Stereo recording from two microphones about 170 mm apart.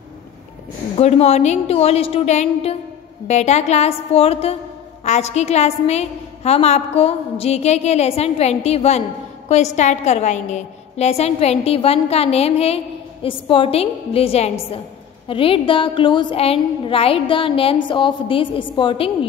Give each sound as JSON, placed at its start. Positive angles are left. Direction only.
{"t": 0.9, "sound": "a woman's voice", "side_deg": 35}